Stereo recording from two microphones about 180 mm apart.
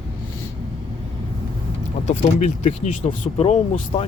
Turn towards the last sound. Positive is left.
turn(degrees=35)  # may be behind; listen again after turning